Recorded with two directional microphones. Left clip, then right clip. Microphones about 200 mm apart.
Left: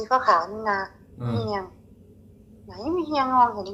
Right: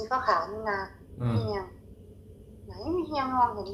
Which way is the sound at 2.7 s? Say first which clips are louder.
Left 5 dB; 35° left (ahead or behind).